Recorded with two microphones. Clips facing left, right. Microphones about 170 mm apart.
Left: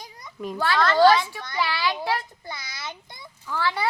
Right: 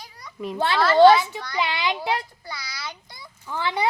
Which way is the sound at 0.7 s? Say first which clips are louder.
Right 2 dB; 10° right (ahead or behind).